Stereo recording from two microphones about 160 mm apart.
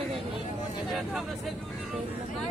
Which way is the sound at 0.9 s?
Centre (ahead or behind).